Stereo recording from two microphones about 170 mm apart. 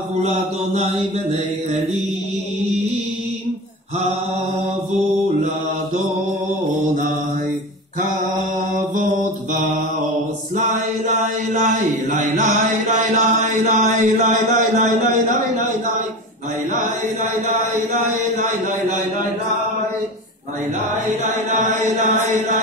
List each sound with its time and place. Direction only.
8.9 s mantra: 50° right (ahead or behind)
11.1 s chant: 45° right (ahead or behind)
16.7 s mantra: 50° right (ahead or behind)
21.2 s a sound: 45° right (ahead or behind)